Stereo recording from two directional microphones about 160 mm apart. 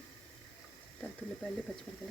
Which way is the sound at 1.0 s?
5° left (ahead or behind).